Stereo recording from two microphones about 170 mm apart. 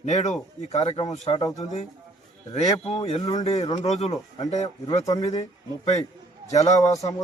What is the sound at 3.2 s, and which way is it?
Speech, 25° left (ahead or behind).